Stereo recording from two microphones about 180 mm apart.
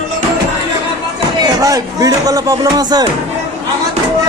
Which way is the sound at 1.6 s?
20° right (ahead or behind).